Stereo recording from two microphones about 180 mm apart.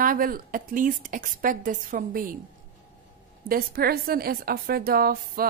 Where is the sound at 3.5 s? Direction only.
55° right (ahead or behind).